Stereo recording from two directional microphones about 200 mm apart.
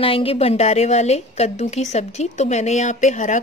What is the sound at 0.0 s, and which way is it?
A woman's voice, 30° left (ahead or behind).